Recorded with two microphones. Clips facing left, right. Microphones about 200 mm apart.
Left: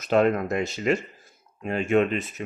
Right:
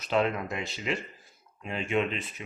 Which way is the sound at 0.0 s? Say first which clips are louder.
Left 6 dB; 50° left (ahead or behind).